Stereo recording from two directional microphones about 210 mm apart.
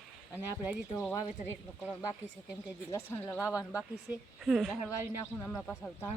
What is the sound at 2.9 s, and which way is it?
Speech, 10° left (ahead or behind).